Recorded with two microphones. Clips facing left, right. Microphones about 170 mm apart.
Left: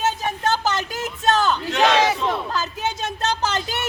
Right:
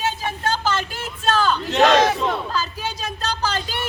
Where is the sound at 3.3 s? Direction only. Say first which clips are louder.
Even; 25° left (ahead or behind).